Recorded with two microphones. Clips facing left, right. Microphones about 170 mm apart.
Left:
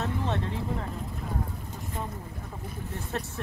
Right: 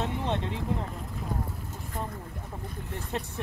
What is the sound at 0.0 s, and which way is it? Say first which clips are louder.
Vehicle: even; 20° right (ahead or behind).